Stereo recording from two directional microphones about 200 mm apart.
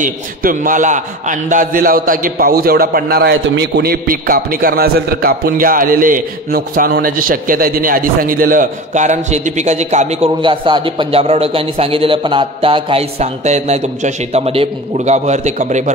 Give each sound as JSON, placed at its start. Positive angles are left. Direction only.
{"t": 0.0, "sound": "a man's voice", "side_deg": -45}